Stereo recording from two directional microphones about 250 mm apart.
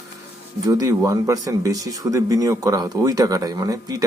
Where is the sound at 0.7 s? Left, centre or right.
Centre.